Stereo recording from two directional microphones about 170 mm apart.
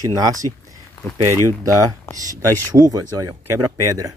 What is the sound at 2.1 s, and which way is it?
Speech, 15° left (ahead or behind).